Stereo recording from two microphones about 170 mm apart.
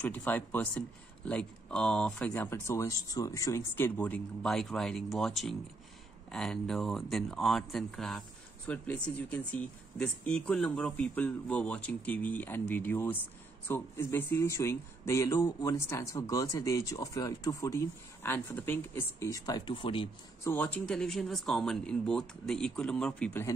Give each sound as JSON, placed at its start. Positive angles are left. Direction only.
{"t": 0.0, "sound": "speech", "side_deg": 10}
{"t": 20.4, "sound": "speech", "side_deg": 10}